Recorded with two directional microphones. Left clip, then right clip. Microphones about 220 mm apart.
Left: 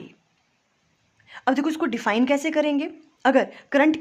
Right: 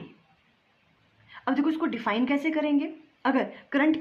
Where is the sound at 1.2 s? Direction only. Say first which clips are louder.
Left 4 dB; 45° left (ahead or behind).